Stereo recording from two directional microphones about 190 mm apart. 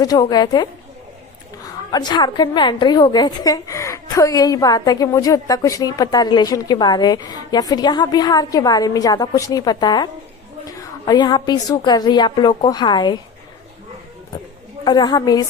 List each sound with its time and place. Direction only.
0.0 s a woman's voice: 20° left (ahead or behind)
14.8 s a woman's voice: 20° left (ahead or behind)